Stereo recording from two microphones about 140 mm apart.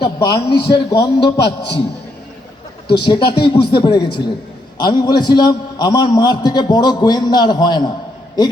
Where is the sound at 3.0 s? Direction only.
35° left (ahead or behind).